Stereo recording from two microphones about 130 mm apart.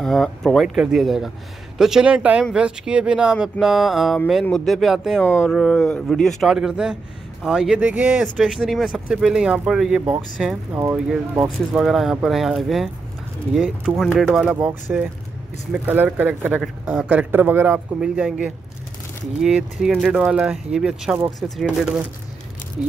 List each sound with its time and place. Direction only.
0.0 s speech: 5° left (ahead or behind)
5.2 s speech: 15° left (ahead or behind)
5.5 s speech: 5° left (ahead or behind)